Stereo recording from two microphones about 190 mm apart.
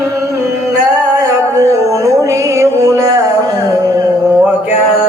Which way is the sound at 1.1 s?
15° right (ahead or behind).